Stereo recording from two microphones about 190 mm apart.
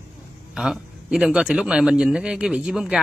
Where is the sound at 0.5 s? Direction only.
5° right (ahead or behind).